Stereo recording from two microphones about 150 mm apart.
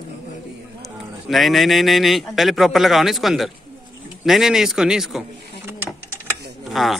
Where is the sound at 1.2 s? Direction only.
Centre (ahead or behind).